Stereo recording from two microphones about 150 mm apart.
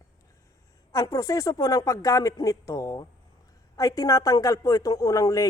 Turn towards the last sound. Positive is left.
turn(degrees=25)  # may be behind; listen again after turning